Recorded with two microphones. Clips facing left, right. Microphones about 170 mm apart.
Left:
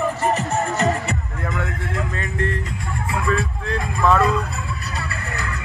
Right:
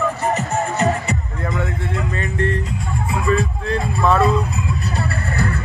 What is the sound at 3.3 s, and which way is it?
Vehicle, centre (ahead or behind).